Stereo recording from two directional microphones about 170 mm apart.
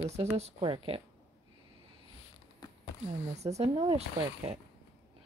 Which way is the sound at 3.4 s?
40° right (ahead or behind).